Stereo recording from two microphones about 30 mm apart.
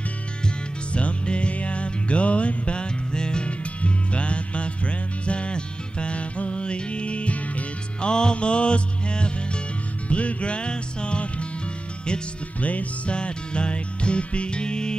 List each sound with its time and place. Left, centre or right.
0.9 s music: left
3.4 s music: left
8.0 s music: left
10.0 s music: left
12.5 s music: left
13.1 s music: left